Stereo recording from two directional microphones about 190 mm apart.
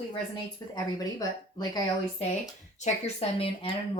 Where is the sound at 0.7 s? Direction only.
20° left (ahead or behind).